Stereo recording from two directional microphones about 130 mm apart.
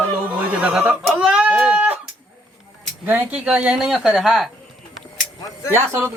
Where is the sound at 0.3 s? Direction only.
10° right (ahead or behind).